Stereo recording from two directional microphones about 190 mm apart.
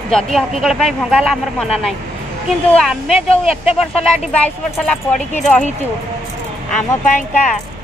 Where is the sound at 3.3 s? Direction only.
30° left (ahead or behind).